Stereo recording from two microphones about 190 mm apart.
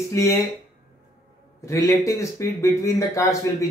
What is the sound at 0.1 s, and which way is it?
Speech, 15° left (ahead or behind).